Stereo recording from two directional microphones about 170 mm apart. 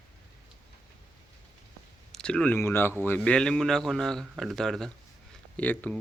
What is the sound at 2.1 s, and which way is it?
Speech, 5° left (ahead or behind).